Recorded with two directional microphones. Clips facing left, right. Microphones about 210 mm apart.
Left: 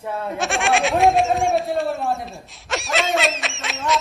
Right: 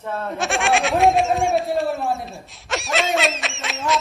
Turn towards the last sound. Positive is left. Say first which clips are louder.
# even
turn(degrees=0)  # may be behind; listen again after turning